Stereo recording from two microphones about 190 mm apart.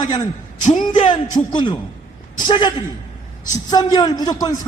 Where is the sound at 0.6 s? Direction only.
40° left (ahead or behind).